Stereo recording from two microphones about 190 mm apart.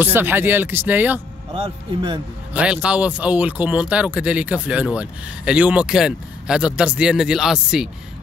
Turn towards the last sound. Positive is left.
turn(degrees=-5)  # may be behind; listen again after turning